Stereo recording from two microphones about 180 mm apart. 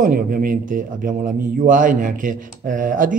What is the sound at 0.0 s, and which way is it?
A man's voice, 55° right (ahead or behind).